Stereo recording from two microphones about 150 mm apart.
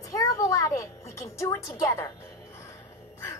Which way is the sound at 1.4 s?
20° left (ahead or behind).